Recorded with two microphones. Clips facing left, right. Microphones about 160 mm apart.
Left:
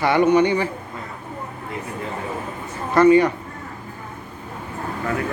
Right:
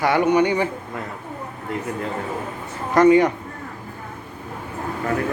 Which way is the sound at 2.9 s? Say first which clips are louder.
Even; 15° right (ahead or behind).